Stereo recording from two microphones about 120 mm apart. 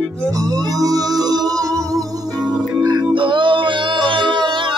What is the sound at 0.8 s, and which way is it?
Music, 30° right (ahead or behind).